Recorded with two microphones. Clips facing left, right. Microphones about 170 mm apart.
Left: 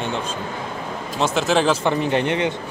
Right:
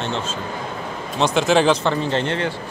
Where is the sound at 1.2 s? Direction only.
Centre (ahead or behind).